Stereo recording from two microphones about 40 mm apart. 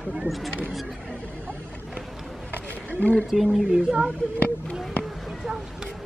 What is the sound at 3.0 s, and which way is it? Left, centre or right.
Speech, left.